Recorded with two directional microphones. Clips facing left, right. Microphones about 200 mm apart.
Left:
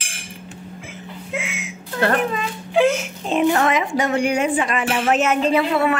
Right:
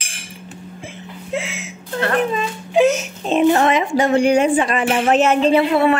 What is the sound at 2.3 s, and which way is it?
Speech, 20° right (ahead or behind).